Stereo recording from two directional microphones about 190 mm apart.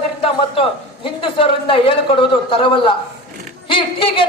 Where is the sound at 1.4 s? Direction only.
30° left (ahead or behind).